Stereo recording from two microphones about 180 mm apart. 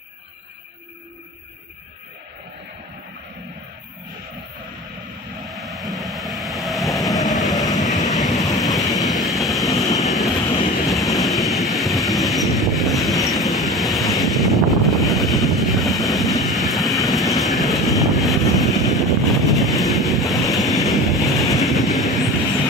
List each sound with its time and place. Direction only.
5.5 s train: centre (ahead or behind)